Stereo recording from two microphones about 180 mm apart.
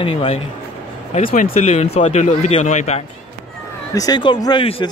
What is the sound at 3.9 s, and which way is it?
Speech, 20° left (ahead or behind).